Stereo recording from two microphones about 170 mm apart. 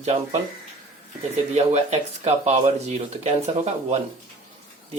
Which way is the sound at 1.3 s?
40° right (ahead or behind).